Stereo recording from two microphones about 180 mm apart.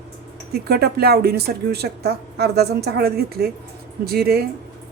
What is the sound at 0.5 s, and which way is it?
Speech, 60° right (ahead or behind).